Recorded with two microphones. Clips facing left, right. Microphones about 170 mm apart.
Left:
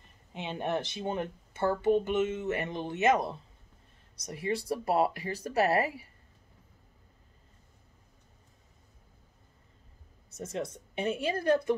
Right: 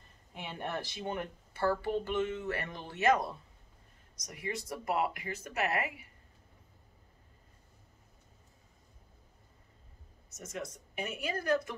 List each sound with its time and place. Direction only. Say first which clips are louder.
0.3 s speech: left 6 dB; 20° left (ahead or behind)
10.3 s speech: left 6 dB; 30° left (ahead or behind)